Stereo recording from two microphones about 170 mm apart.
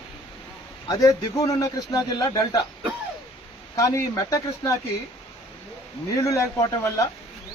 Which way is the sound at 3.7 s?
15° left (ahead or behind).